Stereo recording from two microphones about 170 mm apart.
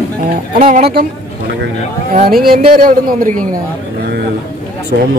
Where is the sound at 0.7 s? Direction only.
60° right (ahead or behind).